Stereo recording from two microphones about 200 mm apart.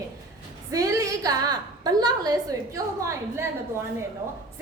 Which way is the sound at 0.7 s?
15° right (ahead or behind).